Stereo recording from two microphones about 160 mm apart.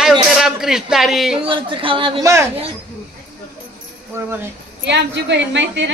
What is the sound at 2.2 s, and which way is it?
Speech, 20° right (ahead or behind).